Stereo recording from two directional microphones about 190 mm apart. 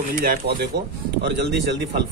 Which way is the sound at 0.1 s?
55° right (ahead or behind).